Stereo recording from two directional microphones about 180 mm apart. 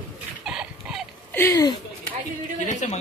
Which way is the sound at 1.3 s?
10° left (ahead or behind).